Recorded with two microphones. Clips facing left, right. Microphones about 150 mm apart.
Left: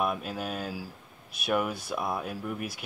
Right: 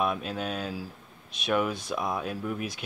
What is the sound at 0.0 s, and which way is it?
Speech, 5° left (ahead or behind).